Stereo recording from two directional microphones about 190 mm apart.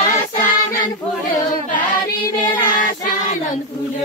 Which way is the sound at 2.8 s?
45° left (ahead or behind).